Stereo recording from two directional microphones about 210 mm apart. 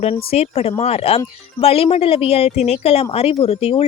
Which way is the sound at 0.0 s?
30° left (ahead or behind).